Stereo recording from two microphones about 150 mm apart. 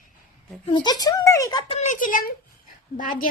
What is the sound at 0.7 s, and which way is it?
Speech, 30° left (ahead or behind).